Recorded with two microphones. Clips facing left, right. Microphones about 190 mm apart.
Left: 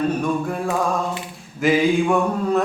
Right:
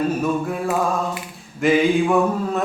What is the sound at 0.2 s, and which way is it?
Speech, centre (ahead or behind).